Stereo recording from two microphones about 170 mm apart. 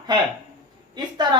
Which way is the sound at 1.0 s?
25° right (ahead or behind).